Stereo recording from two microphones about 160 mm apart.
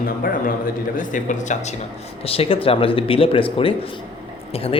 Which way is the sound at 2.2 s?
35° left (ahead or behind).